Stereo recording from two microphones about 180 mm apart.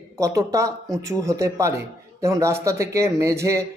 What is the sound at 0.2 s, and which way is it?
A man's voice, 15° right (ahead or behind).